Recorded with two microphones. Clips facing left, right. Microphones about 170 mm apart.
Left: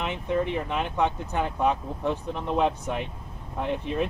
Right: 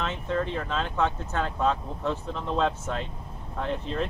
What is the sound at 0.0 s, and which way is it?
Speech, 15° left (ahead or behind).